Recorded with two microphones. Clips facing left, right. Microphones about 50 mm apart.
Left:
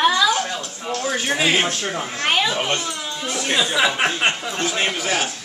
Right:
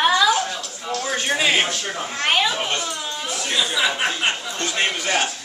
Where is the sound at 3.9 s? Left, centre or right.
Left.